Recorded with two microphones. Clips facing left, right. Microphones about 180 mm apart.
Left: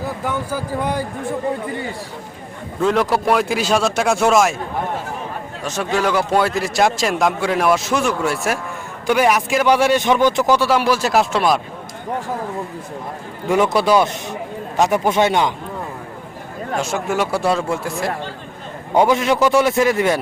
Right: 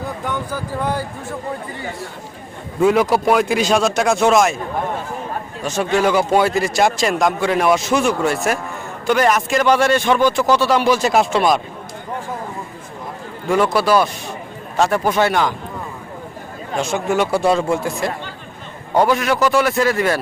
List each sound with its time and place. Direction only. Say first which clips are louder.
0.3 s speech: left 2 dB; 10° left (ahead or behind)
2.8 s a man's voice: right 3 dB; 5° right (ahead or behind)
5.6 s a man's voice: right 3 dB; centre (ahead or behind)
13.5 s a man's voice: even; 20° left (ahead or behind)
16.7 s a man's voice: right 2 dB; 5° left (ahead or behind)
18.9 s a man's voice: left 1 dB; 20° left (ahead or behind)